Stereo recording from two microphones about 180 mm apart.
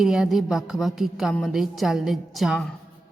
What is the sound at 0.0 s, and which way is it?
A woman's voice, centre (ahead or behind).